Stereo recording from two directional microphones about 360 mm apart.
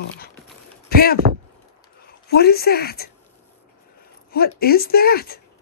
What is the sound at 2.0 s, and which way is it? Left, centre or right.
Speech, left.